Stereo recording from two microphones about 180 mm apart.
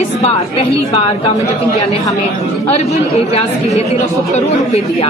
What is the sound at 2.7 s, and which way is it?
A woman's voice, 35° left (ahead or behind).